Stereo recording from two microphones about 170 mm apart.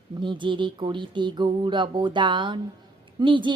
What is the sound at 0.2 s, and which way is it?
Speech, 30° right (ahead or behind).